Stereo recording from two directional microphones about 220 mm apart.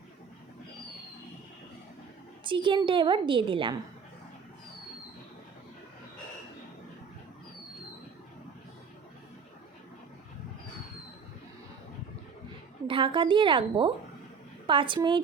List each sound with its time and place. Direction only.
2.4 s a woman's voice: 20° right (ahead or behind)
12.9 s a woman's voice: 20° right (ahead or behind)